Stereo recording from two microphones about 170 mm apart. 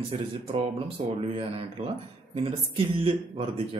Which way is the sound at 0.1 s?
35° right (ahead or behind).